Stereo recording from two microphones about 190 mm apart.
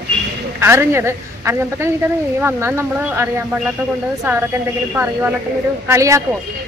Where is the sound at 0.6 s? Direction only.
15° right (ahead or behind).